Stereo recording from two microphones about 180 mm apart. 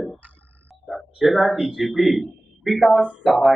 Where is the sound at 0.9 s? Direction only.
Centre (ahead or behind).